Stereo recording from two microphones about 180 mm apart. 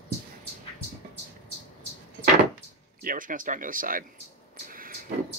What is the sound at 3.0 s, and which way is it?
Speech, 50° right (ahead or behind).